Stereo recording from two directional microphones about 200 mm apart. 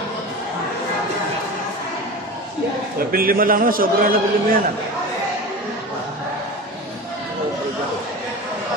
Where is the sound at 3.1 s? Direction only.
45° right (ahead or behind).